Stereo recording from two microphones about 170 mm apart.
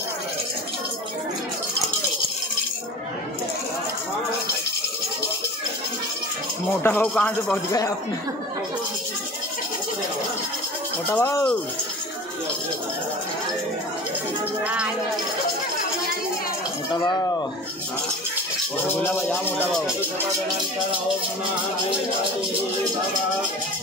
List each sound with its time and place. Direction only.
6.8 s speech: 10° left (ahead or behind)
11.1 s speech: 15° left (ahead or behind)
14.6 s speech: 5° right (ahead or behind)
16.9 s speech: 20° left (ahead or behind)
19.2 s speech: 10° left (ahead or behind)